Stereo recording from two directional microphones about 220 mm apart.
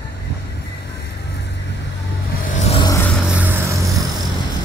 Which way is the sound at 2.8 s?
10° left (ahead or behind).